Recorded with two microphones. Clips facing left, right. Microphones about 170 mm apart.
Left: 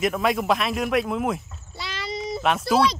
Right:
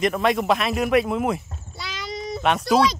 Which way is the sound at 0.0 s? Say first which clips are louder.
Right 2 dB; centre (ahead or behind).